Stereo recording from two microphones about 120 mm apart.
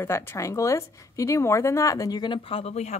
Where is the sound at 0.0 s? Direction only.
20° left (ahead or behind).